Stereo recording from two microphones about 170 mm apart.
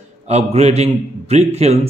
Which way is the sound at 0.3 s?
40° right (ahead or behind).